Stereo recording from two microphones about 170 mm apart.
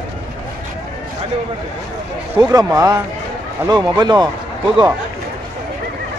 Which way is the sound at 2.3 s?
20° right (ahead or behind).